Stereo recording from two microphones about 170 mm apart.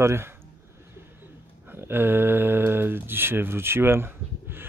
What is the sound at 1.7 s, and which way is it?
Speech, 15° right (ahead or behind).